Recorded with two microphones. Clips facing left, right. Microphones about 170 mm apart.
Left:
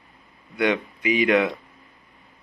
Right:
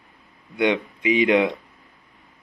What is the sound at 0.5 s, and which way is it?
Speech, 20° right (ahead or behind).